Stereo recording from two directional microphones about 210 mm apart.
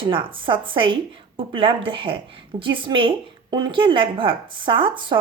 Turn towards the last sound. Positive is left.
turn(degrees=-25)  # may be behind; listen again after turning